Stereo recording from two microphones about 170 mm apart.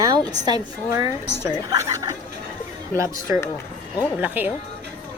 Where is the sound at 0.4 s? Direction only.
20° right (ahead or behind).